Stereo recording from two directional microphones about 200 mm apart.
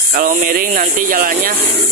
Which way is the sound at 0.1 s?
40° right (ahead or behind).